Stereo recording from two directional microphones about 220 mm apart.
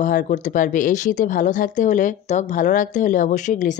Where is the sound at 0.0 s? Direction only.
35° left (ahead or behind).